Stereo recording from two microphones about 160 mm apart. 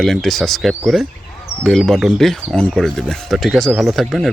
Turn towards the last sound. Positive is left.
turn(degrees=0)  # may be behind; listen again after turning